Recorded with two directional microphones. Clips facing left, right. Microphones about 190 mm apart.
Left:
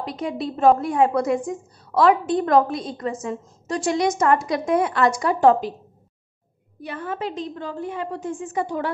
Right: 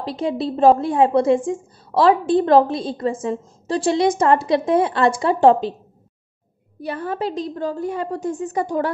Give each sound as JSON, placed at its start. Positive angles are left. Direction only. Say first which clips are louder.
{"t": 0.0, "sound": "a woman's voice", "louder": "right 4 dB", "side_deg": -30}
{"t": 6.8, "sound": "a woman's voice", "louder": "right 4 dB", "side_deg": -35}